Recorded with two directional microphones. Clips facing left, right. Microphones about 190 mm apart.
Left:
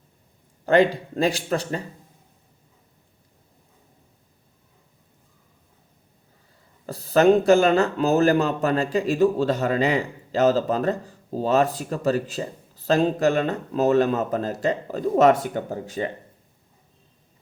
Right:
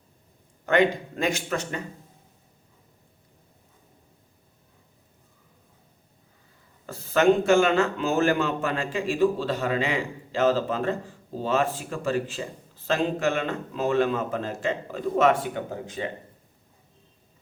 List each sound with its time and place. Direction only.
0.6 s a man's voice: 35° left (ahead or behind)
6.8 s a man's voice: 35° left (ahead or behind)